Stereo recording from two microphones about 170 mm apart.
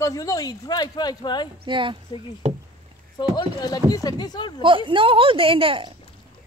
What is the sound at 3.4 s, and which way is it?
Speech, 25° left (ahead or behind).